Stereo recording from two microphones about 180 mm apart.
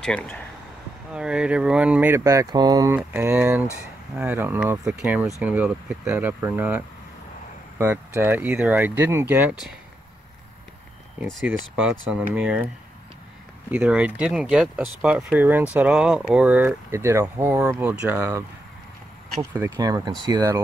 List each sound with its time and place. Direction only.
0.0 s speech: 5° left (ahead or behind)
1.1 s speech: 5° right (ahead or behind)
7.8 s speech: 10° right (ahead or behind)
12.1 s speech: 5° right (ahead or behind)
13.7 s speech: 10° right (ahead or behind)
19.7 s speech: 20° right (ahead or behind)